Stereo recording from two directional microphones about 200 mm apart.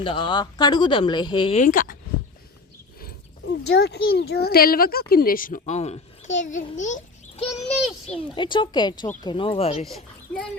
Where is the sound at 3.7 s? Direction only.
55° left (ahead or behind).